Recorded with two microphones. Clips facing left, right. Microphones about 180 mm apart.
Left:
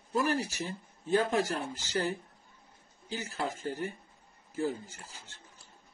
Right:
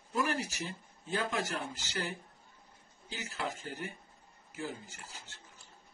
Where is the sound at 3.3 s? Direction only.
40° left (ahead or behind).